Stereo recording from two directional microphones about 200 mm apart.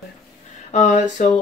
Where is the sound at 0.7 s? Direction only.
35° left (ahead or behind).